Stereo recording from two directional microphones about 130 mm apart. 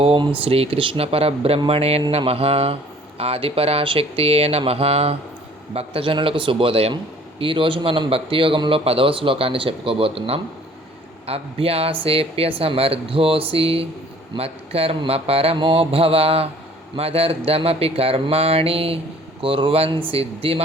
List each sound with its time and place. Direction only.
0.0 s a man's voice: 45° right (ahead or behind)